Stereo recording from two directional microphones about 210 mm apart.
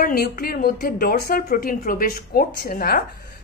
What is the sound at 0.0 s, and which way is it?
A woman's voice, 45° left (ahead or behind).